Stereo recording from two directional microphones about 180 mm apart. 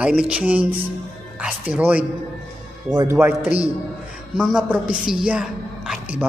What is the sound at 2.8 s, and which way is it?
Speech, 20° right (ahead or behind).